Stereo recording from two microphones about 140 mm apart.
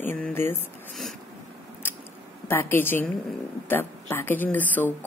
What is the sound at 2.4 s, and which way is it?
Speech, 15° left (ahead or behind).